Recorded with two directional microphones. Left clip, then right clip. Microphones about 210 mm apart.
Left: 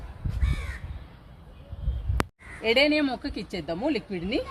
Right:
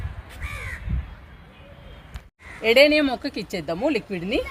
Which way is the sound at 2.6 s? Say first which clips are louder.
Right 6 dB; 35° right (ahead or behind).